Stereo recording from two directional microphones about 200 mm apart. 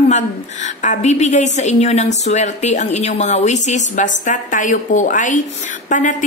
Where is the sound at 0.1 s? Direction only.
35° left (ahead or behind).